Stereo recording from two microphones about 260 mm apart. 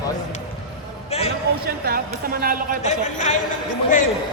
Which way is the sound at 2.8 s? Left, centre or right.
Left.